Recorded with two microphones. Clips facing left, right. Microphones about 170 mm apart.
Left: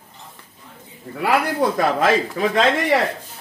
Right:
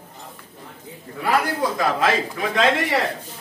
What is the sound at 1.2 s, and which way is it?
Speech, 55° left (ahead or behind).